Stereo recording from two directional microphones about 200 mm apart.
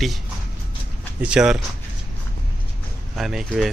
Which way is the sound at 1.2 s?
5° right (ahead or behind).